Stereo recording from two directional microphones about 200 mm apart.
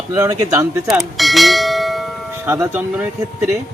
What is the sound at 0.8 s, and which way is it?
Bell, centre (ahead or behind).